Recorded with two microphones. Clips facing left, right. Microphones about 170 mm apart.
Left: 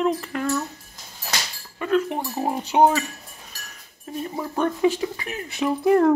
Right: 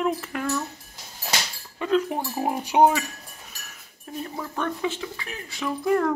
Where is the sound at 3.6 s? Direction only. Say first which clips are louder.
Left 3 dB; centre (ahead or behind).